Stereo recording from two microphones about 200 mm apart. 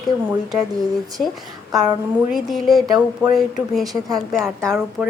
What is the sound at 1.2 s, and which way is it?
A woman's voice, centre (ahead or behind).